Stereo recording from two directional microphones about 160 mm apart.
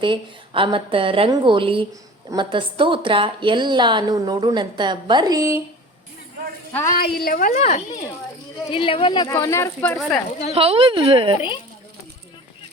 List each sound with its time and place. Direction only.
0.0 s a woman's voice: 30° right (ahead or behind)
6.9 s a woman's voice: 70° left (ahead or behind); by 7.8 s 45° left (ahead or behind)
8.7 s speech: 35° left (ahead or behind)
9.3 s speech: 15° left (ahead or behind)
9.9 s speech: 5° left (ahead or behind)
10.5 s a woman's voice: 40° right (ahead or behind)
11.3 s speech: 30° left (ahead or behind)